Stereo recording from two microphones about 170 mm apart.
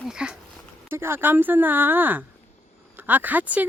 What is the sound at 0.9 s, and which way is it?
Speech, 15° right (ahead or behind).